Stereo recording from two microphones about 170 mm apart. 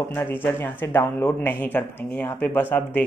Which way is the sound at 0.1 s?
10° left (ahead or behind).